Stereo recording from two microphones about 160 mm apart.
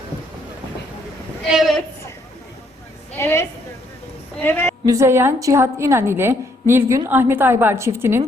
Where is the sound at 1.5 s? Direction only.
Centre (ahead or behind).